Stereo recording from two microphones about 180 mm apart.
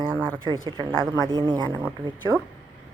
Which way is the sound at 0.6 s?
25° right (ahead or behind).